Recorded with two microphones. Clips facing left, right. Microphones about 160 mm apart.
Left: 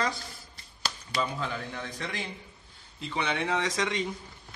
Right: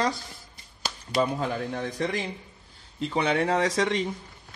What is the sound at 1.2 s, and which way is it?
A man's voice, 45° right (ahead or behind).